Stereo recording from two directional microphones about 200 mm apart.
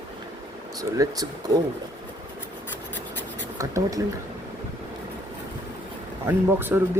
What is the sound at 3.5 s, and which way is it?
Speech, 15° right (ahead or behind).